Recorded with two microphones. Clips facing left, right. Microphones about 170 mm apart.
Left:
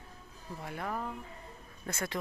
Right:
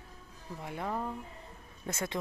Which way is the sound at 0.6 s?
20° right (ahead or behind).